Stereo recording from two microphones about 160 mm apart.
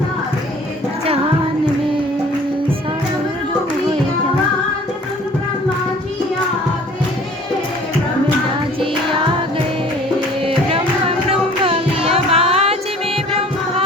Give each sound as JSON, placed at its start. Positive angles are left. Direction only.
{"t": 10.4, "sound": "music", "side_deg": -35}
{"t": 11.3, "sound": "carnatic music", "side_deg": -35}